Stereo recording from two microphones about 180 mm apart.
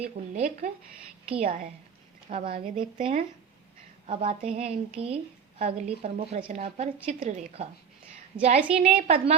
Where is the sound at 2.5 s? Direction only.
30° right (ahead or behind).